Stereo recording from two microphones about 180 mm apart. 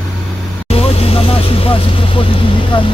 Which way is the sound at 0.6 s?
35° left (ahead or behind).